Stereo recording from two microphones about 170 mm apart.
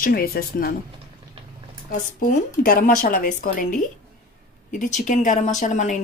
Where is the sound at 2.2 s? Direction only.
55° left (ahead or behind).